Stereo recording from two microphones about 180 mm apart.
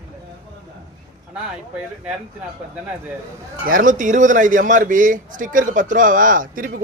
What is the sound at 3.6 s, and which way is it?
A man's voice, 50° right (ahead or behind).